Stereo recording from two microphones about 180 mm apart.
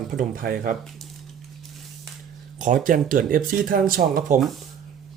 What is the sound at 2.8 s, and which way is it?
Speech, 50° right (ahead or behind).